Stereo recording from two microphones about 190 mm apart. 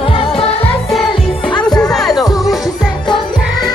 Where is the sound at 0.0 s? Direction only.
25° left (ahead or behind).